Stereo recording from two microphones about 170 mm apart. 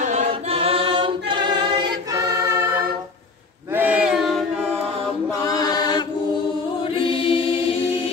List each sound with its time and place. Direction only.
0.0 s choir: 40° right (ahead or behind); by 2.1 s 25° right (ahead or behind)
2.4 s music: 15° right (ahead or behind)
3.7 s a capella: 10° right (ahead or behind)
5.3 s chant: 20° left (ahead or behind)
6.8 s choir: 30° left (ahead or behind)